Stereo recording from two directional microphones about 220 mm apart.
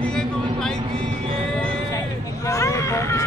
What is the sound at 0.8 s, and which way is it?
Music, 25° right (ahead or behind).